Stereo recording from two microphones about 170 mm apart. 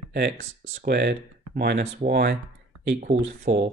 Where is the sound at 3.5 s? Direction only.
45° right (ahead or behind).